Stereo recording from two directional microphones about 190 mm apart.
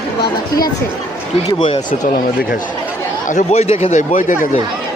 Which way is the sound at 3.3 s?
35° left (ahead or behind).